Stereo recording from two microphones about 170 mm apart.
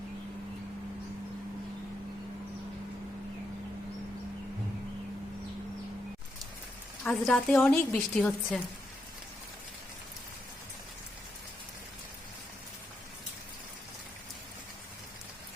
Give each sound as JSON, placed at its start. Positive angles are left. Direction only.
{"t": 7.0, "sound": "a woman's voice", "side_deg": 5}